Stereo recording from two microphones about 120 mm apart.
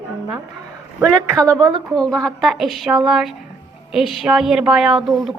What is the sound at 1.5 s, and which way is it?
Speech, 30° right (ahead or behind).